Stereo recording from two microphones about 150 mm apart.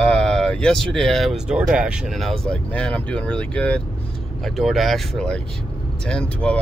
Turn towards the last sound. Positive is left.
turn(degrees=10)  # may be behind; listen again after turning